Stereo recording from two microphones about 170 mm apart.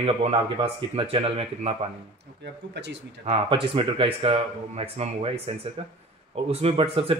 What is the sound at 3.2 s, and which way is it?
Speech, 35° right (ahead or behind).